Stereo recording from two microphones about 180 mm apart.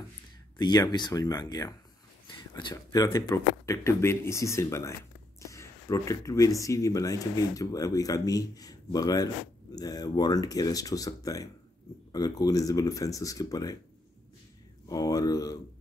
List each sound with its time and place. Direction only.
0.6 s speech: 25° left (ahead or behind)
14.9 s speech: 20° left (ahead or behind)